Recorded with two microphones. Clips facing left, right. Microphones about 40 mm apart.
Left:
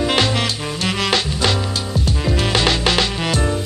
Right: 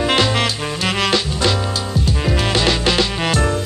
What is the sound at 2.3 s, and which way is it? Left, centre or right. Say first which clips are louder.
Music: even; centre.